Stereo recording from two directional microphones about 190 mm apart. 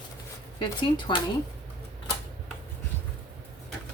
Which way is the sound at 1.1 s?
25° left (ahead or behind).